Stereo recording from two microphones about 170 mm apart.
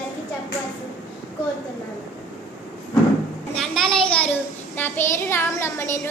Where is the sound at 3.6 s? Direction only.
5° left (ahead or behind).